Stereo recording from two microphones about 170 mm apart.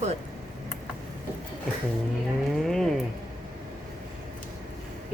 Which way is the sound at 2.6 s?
Centre (ahead or behind).